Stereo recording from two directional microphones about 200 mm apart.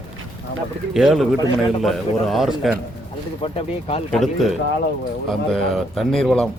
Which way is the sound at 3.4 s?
30° left (ahead or behind).